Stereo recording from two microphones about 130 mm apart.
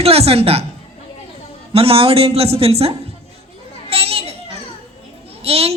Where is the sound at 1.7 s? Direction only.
45° right (ahead or behind).